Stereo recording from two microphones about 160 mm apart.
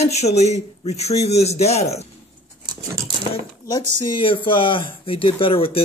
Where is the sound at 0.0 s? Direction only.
40° left (ahead or behind).